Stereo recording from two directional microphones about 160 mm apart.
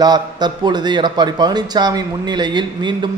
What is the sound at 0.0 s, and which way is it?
A man's voice, 25° right (ahead or behind).